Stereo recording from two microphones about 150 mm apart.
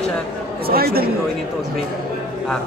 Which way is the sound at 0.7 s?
90° right.